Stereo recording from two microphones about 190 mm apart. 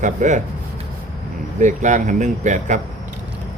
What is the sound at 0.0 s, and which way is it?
Speech, 40° right (ahead or behind).